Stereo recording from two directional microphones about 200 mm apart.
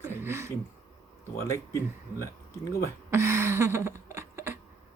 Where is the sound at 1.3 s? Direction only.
15° left (ahead or behind).